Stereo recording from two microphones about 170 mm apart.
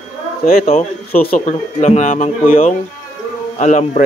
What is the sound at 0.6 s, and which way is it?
A man's voice, 40° left (ahead or behind).